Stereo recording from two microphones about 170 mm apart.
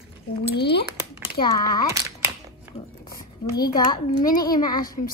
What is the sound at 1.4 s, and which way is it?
Speech, 25° left (ahead or behind).